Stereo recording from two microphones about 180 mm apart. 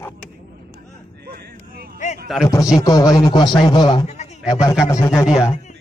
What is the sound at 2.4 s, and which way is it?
A man's voice, 20° left (ahead or behind).